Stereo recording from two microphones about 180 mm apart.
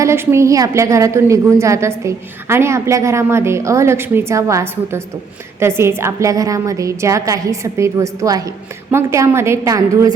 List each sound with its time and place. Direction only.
0.0 s a woman's voice: 15° right (ahead or behind)